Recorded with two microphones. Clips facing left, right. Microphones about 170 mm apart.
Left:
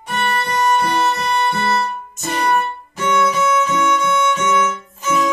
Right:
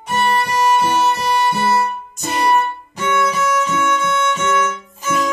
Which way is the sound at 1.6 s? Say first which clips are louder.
Right 2 dB; 15° right (ahead or behind).